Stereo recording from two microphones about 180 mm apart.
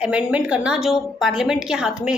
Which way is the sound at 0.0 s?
5° right (ahead or behind).